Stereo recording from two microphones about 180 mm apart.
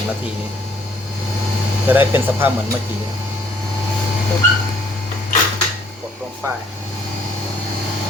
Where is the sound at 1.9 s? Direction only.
10° right (ahead or behind).